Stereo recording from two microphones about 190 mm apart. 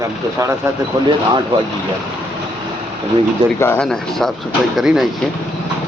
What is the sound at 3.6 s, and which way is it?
Speech, 15° left (ahead or behind).